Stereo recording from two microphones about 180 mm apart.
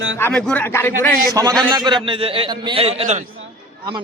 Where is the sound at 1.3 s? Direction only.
20° right (ahead or behind); by 3.2 s 35° right (ahead or behind).